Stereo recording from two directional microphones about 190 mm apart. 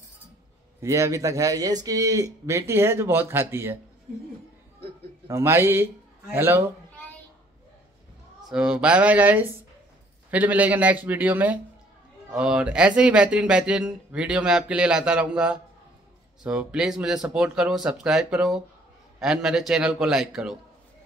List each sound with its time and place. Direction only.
0.7 s speech: 15° right (ahead or behind)
5.3 s speech: 15° right (ahead or behind)
8.5 s speech: 5° right (ahead or behind)